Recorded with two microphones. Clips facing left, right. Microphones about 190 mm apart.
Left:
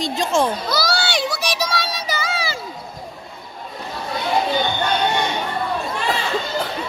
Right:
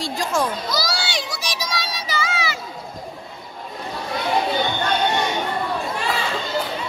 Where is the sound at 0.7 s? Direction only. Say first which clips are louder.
Left 4 dB; 65° left (ahead or behind).